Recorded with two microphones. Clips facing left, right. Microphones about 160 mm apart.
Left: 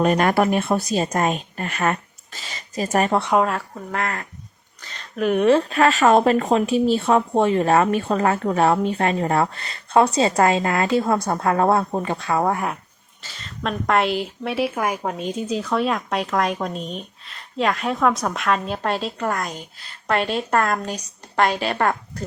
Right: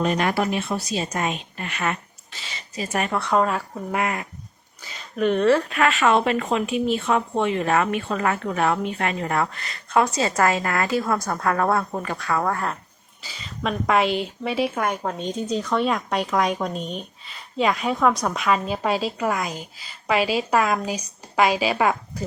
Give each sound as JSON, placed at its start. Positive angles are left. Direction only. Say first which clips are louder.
{"t": 0.0, "sound": "a woman's voice", "louder": "left 4 dB", "side_deg": 50}
{"t": 3.2, "sound": "a woman's voice", "louder": "right 1 dB", "side_deg": 20}
{"t": 3.9, "sound": "speech", "louder": "right 1 dB", "side_deg": -15}
{"t": 5.4, "sound": "a woman's voice", "louder": "left 3 dB", "side_deg": 20}
{"t": 5.6, "sound": "a woman's voice", "louder": "left 4 dB", "side_deg": 35}
{"t": 13.2, "sound": "a woman's voice", "louder": "even", "side_deg": 0}